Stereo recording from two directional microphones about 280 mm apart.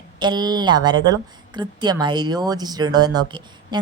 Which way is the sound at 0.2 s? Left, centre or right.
Centre.